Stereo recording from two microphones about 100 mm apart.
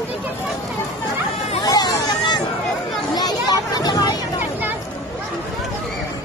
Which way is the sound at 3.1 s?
40° left (ahead or behind).